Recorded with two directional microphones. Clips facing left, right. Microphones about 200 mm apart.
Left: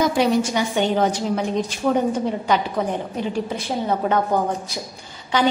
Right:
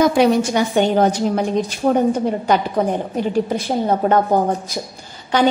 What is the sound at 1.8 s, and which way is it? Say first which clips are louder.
Speech: right 3 dB; 35° right (ahead or behind).